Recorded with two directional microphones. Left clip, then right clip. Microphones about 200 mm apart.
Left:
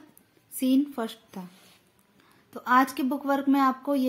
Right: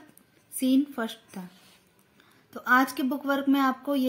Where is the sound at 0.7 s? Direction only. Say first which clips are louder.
Even; 5° left (ahead or behind).